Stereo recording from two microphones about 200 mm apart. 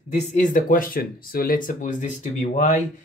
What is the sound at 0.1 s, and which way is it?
Speech, 40° left (ahead or behind).